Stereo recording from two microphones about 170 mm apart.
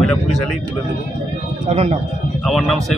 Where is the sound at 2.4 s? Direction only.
Centre (ahead or behind).